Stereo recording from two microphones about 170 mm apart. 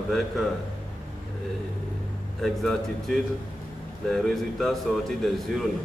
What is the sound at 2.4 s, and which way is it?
A man's voice, centre (ahead or behind).